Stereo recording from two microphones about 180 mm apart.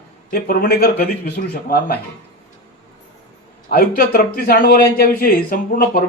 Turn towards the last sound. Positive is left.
turn(degrees=50)  # may be behind; listen again after turning